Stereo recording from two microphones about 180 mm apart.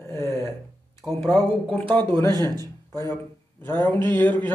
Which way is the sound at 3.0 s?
15° left (ahead or behind).